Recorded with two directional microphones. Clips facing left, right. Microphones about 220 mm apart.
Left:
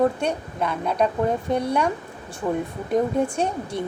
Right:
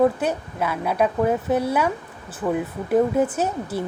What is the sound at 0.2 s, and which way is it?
A woman's voice, 5° right (ahead or behind).